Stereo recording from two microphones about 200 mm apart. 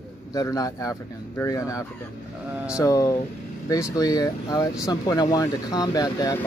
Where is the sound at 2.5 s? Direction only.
5° right (ahead or behind).